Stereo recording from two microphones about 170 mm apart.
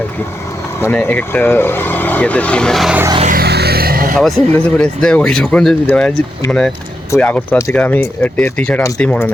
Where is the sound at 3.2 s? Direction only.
65° right (ahead or behind).